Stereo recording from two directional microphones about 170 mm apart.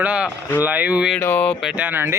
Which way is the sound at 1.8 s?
10° right (ahead or behind).